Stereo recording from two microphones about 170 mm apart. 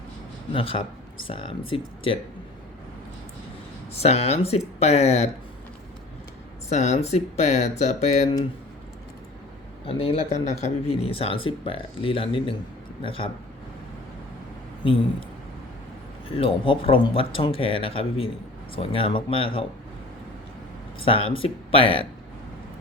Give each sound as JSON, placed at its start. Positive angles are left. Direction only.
{"t": 0.5, "sound": "speech", "side_deg": 30}
{"t": 3.9, "sound": "speech", "side_deg": 40}
{"t": 6.7, "sound": "speech", "side_deg": 40}
{"t": 9.8, "sound": "speech", "side_deg": 35}
{"t": 16.4, "sound": "speech", "side_deg": 30}
{"t": 21.0, "sound": "speech", "side_deg": 30}